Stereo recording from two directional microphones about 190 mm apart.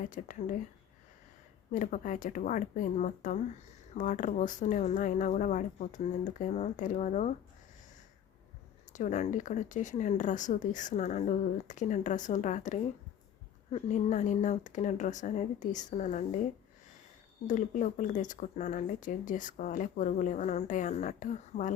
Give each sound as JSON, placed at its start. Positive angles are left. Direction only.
{"t": 0.0, "sound": "speech", "side_deg": 45}
{"t": 1.7, "sound": "speech", "side_deg": 40}
{"t": 8.9, "sound": "speech", "side_deg": 40}
{"t": 17.4, "sound": "speech", "side_deg": 40}